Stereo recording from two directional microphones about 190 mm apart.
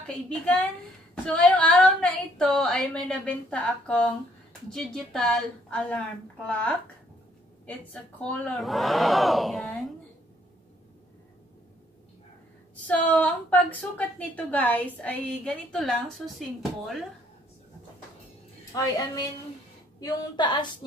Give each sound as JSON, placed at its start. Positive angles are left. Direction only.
{"t": 0.0, "sound": "a woman's voice", "side_deg": 5}
{"t": 12.8, "sound": "a woman's voice", "side_deg": 10}
{"t": 18.7, "sound": "a woman's voice", "side_deg": 15}